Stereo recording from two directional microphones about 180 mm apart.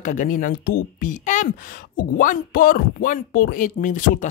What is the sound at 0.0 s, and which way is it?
Speech, 45° left (ahead or behind).